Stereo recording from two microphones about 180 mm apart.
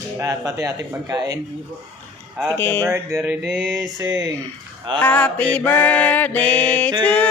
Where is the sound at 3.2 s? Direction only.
Centre (ahead or behind).